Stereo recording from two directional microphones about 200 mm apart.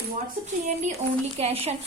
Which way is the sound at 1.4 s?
30° right (ahead or behind).